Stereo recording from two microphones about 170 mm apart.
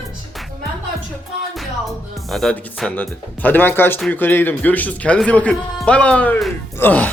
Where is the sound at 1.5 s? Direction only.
Centre (ahead or behind).